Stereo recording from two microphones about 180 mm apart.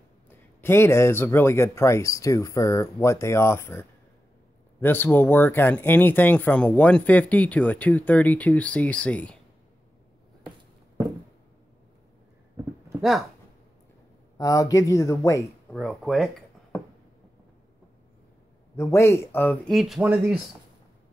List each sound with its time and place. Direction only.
0.3 s speech: 10° left (ahead or behind)
12.6 s a sound: 15° right (ahead or behind)
14.4 s speech: 20° left (ahead or behind)
15.7 s speech: centre (ahead or behind)
18.8 s speech: 15° left (ahead or behind); by 20.3 s 10° right (ahead or behind)